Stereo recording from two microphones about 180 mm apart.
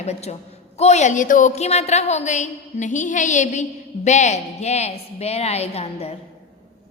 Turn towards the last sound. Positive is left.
turn(degrees=35)  # may be behind; listen again after turning